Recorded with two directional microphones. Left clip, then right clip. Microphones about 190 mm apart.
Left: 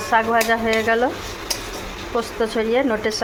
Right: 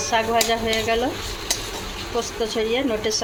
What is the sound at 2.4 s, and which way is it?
Speech, 50° left (ahead or behind).